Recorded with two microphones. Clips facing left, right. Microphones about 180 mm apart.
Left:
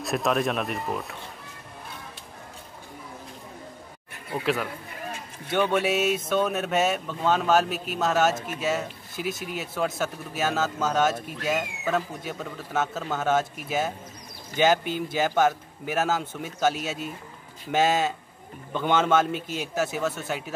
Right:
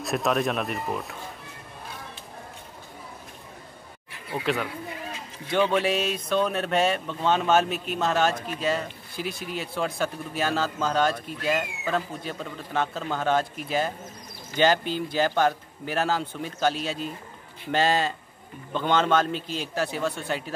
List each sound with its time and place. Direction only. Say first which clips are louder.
0.0 s speech: even; centre (ahead or behind)
4.3 s speech: left 1 dB; centre (ahead or behind)